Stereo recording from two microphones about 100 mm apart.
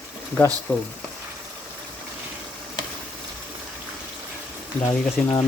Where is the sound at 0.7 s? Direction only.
20° left (ahead or behind).